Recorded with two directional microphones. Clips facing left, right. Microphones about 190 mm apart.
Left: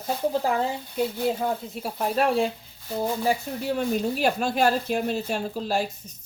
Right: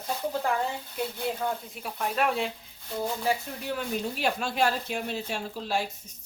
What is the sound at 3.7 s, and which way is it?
Speech, 40° left (ahead or behind).